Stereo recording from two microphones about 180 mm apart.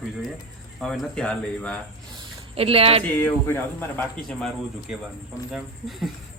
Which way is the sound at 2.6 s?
30° right (ahead or behind).